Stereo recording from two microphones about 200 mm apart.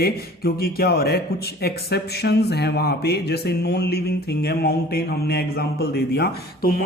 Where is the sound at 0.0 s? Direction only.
50° left (ahead or behind).